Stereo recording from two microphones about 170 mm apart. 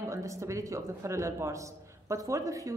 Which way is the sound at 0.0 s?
15° right (ahead or behind).